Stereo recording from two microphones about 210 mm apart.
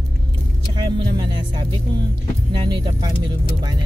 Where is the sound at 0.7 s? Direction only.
20° right (ahead or behind).